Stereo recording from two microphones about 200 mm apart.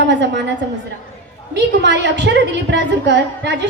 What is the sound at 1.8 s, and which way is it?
A woman's voice, 60° right (ahead or behind).